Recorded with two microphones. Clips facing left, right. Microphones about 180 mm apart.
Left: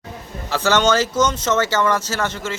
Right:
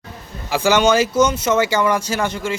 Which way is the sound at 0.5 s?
10° right (ahead or behind).